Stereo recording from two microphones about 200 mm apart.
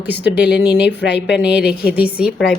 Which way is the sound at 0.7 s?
55° left (ahead or behind).